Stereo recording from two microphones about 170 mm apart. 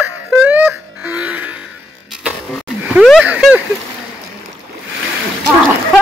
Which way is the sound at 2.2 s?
5° right (ahead or behind).